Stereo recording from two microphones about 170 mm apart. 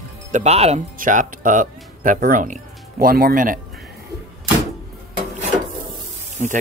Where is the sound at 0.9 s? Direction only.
50° right (ahead or behind).